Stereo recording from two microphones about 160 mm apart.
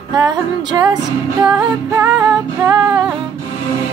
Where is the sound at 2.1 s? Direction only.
5° right (ahead or behind).